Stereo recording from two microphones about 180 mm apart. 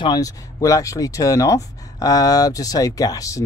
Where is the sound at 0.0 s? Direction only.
20° left (ahead or behind).